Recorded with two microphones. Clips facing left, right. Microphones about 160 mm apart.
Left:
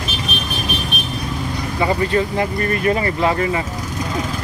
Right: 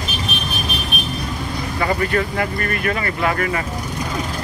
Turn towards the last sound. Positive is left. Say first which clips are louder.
# left 3 dB
turn(degrees=20)  # may be behind; listen again after turning